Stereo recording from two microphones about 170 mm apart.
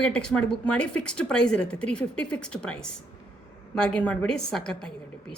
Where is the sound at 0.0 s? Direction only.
5° left (ahead or behind).